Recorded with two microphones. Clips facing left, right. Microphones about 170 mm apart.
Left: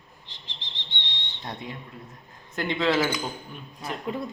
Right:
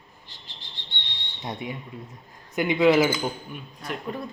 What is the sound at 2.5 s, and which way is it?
Speech, 15° right (ahead or behind).